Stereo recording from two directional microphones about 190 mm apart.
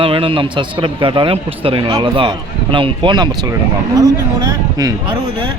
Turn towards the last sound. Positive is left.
turn(degrees=-20)  # may be behind; listen again after turning